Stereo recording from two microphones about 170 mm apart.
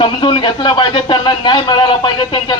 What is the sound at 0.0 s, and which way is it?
Speech, 30° left (ahead or behind).